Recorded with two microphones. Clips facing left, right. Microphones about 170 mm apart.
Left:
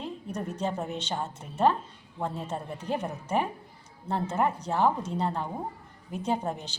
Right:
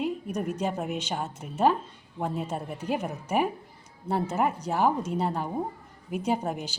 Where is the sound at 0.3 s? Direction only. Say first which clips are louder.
Left 2 dB; 10° right (ahead or behind).